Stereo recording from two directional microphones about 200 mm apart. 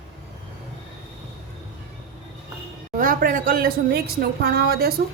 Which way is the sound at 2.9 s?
45° right (ahead or behind).